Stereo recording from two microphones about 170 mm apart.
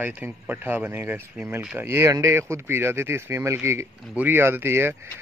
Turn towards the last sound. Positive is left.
turn(degrees=-15)  # may be behind; listen again after turning